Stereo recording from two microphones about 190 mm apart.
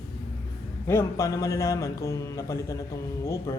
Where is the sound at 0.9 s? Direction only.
15° left (ahead or behind).